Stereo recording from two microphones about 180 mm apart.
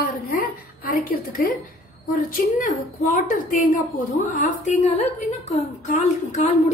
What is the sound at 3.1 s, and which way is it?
A woman's voice, 50° left (ahead or behind).